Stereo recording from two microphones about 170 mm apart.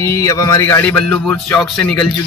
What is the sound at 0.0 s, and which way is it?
A man's voice, 15° left (ahead or behind).